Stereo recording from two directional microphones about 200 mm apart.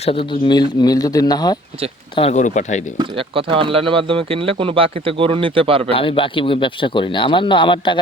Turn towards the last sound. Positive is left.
turn(degrees=25)  # may be behind; listen again after turning